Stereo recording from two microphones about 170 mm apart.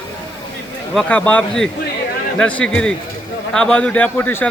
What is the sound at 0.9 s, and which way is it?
A man's voice, 10° left (ahead or behind).